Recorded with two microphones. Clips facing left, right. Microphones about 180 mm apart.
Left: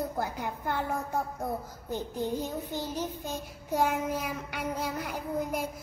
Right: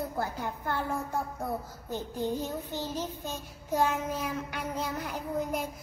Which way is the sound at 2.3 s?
15° left (ahead or behind).